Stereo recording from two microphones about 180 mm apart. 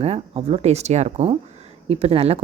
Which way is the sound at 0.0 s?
35° right (ahead or behind).